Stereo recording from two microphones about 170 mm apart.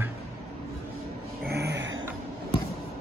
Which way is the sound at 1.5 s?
75° right (ahead or behind).